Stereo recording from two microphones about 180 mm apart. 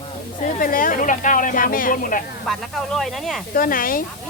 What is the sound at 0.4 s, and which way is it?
Speech, 50° left (ahead or behind).